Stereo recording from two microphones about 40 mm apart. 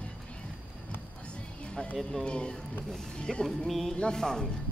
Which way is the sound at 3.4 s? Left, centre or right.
Centre.